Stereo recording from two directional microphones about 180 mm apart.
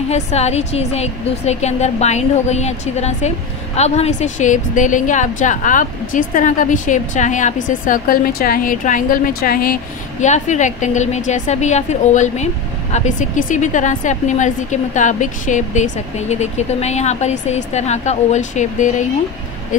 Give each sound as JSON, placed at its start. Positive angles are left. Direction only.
{"t": 0.1, "sound": "a woman's voice", "side_deg": 35}
{"t": 10.2, "sound": "a woman's voice", "side_deg": 40}